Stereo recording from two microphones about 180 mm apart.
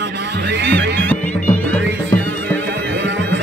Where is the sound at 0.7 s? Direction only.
70° right (ahead or behind).